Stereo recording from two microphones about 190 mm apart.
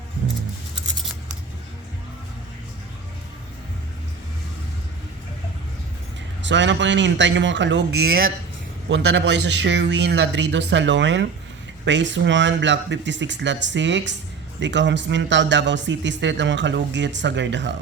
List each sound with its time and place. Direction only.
6.4 s speech: 70° right (ahead or behind)
8.9 s speech: 65° right (ahead or behind)